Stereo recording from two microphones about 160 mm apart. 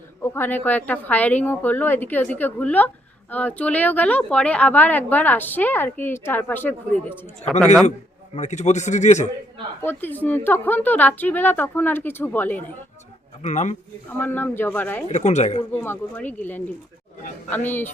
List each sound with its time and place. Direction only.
0.2 s a woman's voice: 15° left (ahead or behind)
7.9 s a man's voice: 45° left (ahead or behind)
9.8 s a woman's voice: 15° left (ahead or behind)
13.4 s a man's voice: 50° left (ahead or behind)
14.2 s a woman's voice: 10° left (ahead or behind)
15.0 s a man's voice: 45° left (ahead or behind)
15.7 s a woman's voice: 15° left (ahead or behind)